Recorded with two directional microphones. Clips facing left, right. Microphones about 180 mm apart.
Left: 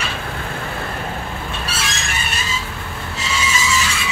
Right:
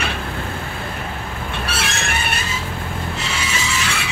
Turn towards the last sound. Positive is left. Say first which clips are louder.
# left 2 dB
turn(degrees=-60)  # may be behind; listen again after turning